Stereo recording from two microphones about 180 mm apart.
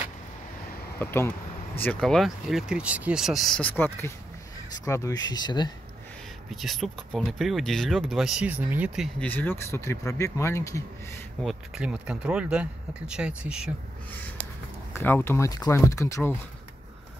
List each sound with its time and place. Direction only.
0.9 s speech: 10° left (ahead or behind)
6.5 s speech: centre (ahead or behind)
9.2 s speech: 10° left (ahead or behind)
11.4 s speech: 5° right (ahead or behind)
14.9 s speech: 10° left (ahead or behind)